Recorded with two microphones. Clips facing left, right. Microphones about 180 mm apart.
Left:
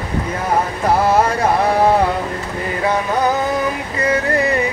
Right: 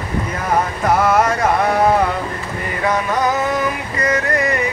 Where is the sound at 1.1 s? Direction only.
30° left (ahead or behind).